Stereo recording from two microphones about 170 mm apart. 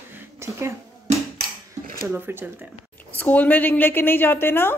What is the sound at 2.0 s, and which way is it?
Speech, 15° right (ahead or behind).